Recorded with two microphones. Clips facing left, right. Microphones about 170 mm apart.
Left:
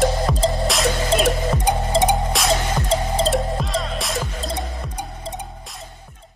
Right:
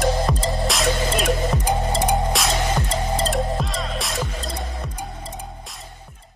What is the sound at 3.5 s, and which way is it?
Music, centre (ahead or behind).